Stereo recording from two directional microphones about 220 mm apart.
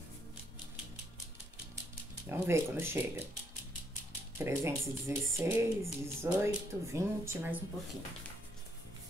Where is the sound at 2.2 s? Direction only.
10° right (ahead or behind).